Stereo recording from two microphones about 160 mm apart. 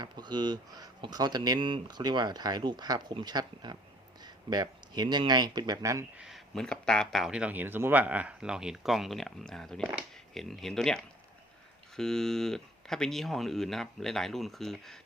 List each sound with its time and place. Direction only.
0.0 s speech: 25° right (ahead or behind)
6.1 s speech: centre (ahead or behind)